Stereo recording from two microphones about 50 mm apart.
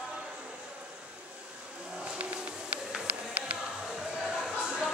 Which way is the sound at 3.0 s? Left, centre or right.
Right.